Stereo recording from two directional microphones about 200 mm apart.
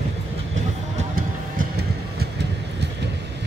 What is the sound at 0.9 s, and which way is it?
Vehicle, 45° right (ahead or behind).